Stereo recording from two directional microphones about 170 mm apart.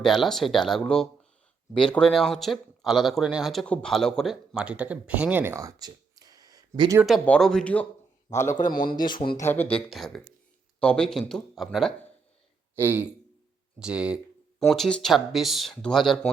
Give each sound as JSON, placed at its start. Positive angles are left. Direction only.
{"t": 0.0, "sound": "speech", "side_deg": 0}
{"t": 7.0, "sound": "speech", "side_deg": 0}
{"t": 8.7, "sound": "speech", "side_deg": 55}
{"t": 9.4, "sound": "speech", "side_deg": 15}
{"t": 9.7, "sound": "speech", "side_deg": 0}
{"t": 12.7, "sound": "a man's voice", "side_deg": -10}